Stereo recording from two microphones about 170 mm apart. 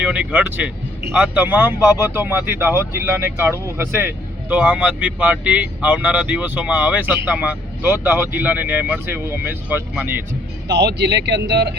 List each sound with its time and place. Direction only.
0.0 s speech: 10° right (ahead or behind)
10.7 s speech: 90° right